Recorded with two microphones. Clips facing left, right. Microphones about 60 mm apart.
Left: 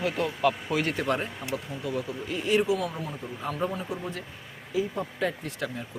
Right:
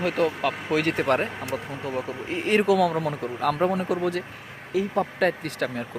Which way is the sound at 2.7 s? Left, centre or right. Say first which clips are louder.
Right 9 dB; right.